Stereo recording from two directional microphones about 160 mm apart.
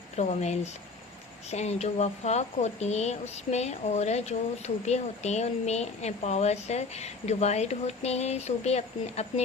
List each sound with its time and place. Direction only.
0.2 s speech: 45° left (ahead or behind)